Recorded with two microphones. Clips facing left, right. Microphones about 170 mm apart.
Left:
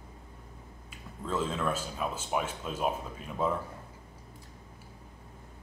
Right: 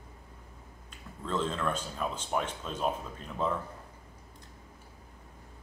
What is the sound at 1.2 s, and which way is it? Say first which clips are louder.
Speech: even; 5° left (ahead or behind).